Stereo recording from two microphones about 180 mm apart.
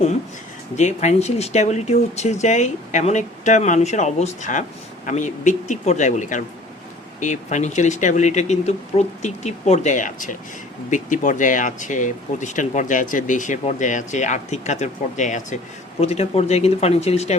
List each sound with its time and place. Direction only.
0.8 s speech: 40° left (ahead or behind)